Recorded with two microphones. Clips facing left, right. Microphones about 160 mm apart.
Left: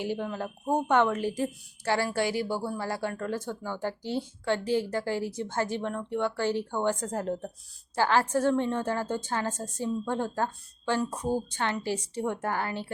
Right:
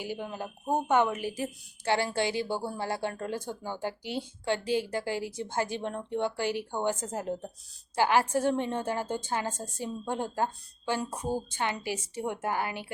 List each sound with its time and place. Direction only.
0.0 s speech: 10° right (ahead or behind)
1.8 s speech: 20° right (ahead or behind)